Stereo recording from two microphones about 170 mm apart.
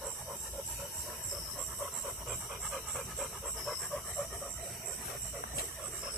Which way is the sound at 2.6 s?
Centre (ahead or behind).